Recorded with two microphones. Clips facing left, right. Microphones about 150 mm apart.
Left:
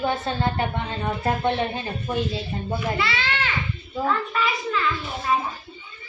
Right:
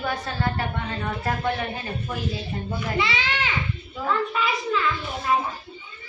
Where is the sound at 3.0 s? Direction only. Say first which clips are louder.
Even; 15° right (ahead or behind).